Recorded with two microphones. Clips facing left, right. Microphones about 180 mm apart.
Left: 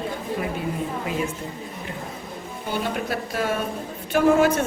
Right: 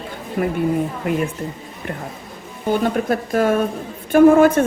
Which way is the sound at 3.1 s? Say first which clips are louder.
Right 8 dB; 50° right (ahead or behind).